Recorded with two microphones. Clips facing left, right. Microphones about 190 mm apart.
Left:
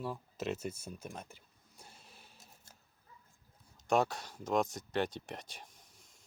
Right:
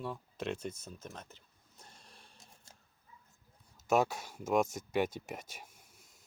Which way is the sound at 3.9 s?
10° right (ahead or behind).